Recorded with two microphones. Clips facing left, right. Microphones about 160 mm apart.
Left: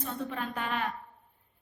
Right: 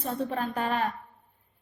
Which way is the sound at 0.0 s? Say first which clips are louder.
Right 5 dB; 35° right (ahead or behind).